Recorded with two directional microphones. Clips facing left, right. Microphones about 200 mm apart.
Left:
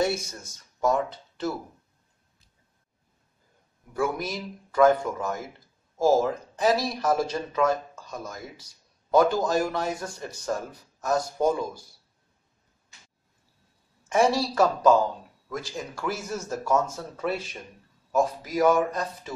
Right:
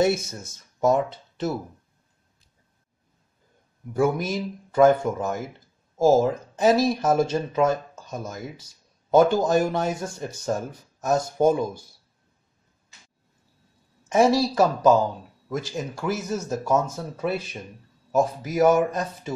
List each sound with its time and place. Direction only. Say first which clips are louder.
0.0 s speech: right 4 dB; 25° right (ahead or behind)
3.9 s speech: right 5 dB; 25° right (ahead or behind)
14.1 s speech: right 3 dB; 20° right (ahead or behind)